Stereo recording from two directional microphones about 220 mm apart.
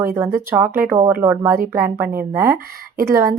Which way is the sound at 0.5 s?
10° right (ahead or behind).